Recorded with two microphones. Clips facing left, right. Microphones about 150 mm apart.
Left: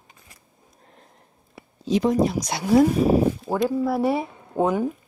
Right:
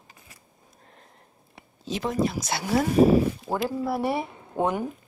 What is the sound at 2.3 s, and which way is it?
Speech, centre (ahead or behind).